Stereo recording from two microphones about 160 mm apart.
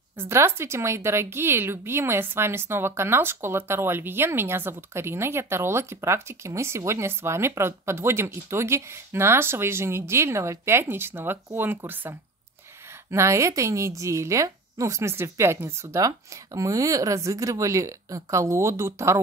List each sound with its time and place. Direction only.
0.2 s a woman's voice: 15° right (ahead or behind)